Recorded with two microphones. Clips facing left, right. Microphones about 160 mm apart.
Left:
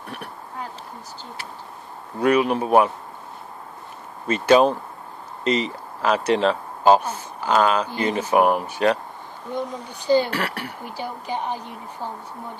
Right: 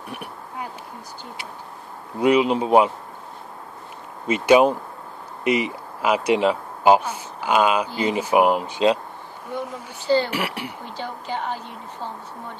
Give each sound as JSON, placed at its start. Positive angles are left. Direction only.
{"t": 0.1, "sound": "insect", "side_deg": -15}
{"t": 2.1, "sound": "speech", "side_deg": -15}
{"t": 4.3, "sound": "speech", "side_deg": -15}
{"t": 9.5, "sound": "a woman's voice", "side_deg": 15}
{"t": 10.3, "sound": "speech", "side_deg": -15}
{"t": 10.9, "sound": "a woman's voice", "side_deg": 15}